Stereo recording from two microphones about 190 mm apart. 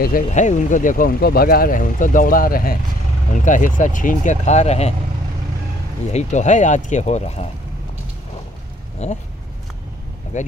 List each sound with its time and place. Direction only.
0.0 s speech: 45° left (ahead or behind)
6.1 s speech: 40° left (ahead or behind)
9.0 s speech: 35° left (ahead or behind)
10.3 s speech: 40° left (ahead or behind)